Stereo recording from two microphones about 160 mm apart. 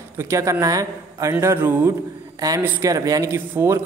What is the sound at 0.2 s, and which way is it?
A man's voice, 20° right (ahead or behind).